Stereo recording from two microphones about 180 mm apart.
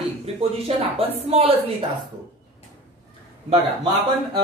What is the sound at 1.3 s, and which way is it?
Speech, 35° right (ahead or behind).